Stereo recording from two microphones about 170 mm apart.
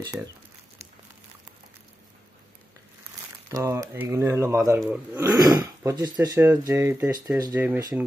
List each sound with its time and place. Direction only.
3.4 s speech: 20° right (ahead or behind)
5.4 s speech: 25° right (ahead or behind)